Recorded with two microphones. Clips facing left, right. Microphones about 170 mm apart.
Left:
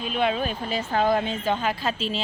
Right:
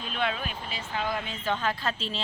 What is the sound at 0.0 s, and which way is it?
Speech, 15° left (ahead or behind).